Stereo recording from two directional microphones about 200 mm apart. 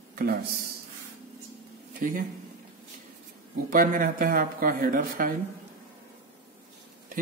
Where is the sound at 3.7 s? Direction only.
45° right (ahead or behind).